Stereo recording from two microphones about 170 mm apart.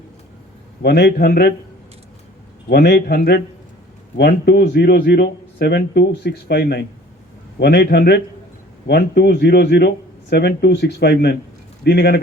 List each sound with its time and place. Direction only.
0.8 s speech: 70° left (ahead or behind)
2.6 s speech: 70° left (ahead or behind)